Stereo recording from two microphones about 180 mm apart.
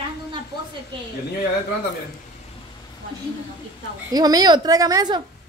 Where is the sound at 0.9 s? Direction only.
25° right (ahead or behind).